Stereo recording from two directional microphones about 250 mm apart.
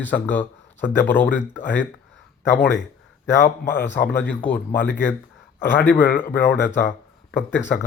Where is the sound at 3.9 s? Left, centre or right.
Left.